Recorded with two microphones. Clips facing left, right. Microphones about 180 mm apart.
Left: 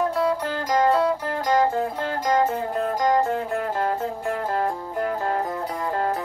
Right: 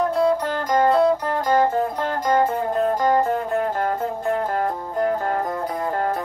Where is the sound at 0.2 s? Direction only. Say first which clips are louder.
Right 4 dB; 45° right (ahead or behind).